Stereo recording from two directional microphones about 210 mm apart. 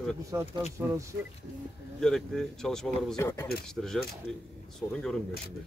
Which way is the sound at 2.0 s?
5° left (ahead or behind).